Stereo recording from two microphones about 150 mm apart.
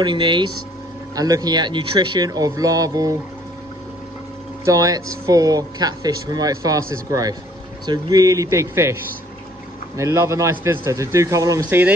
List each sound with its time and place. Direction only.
0.0 s speech: 30° right (ahead or behind)
4.6 s speech: 25° right (ahead or behind)
9.9 s speech: 20° right (ahead or behind)